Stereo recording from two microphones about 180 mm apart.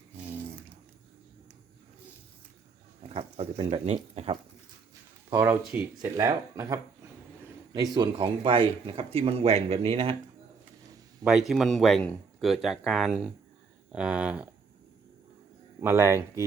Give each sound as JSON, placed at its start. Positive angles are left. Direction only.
{"t": 0.2, "sound": "a sound", "side_deg": -10}
{"t": 3.1, "sound": "speech", "side_deg": -35}
{"t": 5.3, "sound": "speech", "side_deg": -15}
{"t": 7.9, "sound": "speech", "side_deg": -30}
{"t": 11.3, "sound": "speech", "side_deg": 0}
{"t": 15.8, "sound": "speech", "side_deg": -15}